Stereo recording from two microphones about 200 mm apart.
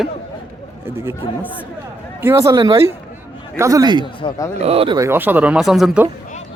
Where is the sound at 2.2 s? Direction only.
15° right (ahead or behind).